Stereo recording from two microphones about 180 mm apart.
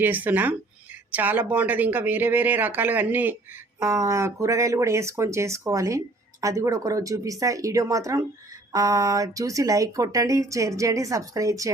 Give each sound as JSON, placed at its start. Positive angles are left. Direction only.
{"t": 0.0, "sound": "speech", "side_deg": -10}